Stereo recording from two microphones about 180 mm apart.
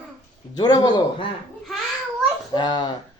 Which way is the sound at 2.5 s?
25° left (ahead or behind).